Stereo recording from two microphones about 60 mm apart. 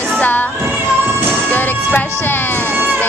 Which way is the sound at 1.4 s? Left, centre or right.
Left.